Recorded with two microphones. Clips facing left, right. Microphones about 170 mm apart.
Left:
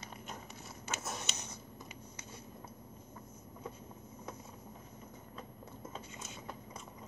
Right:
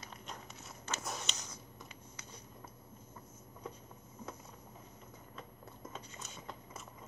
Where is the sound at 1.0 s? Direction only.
Centre (ahead or behind).